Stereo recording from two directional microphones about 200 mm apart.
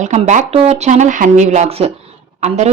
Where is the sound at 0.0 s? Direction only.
35° right (ahead or behind).